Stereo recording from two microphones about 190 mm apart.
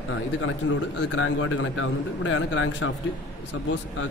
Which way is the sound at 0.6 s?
80° left.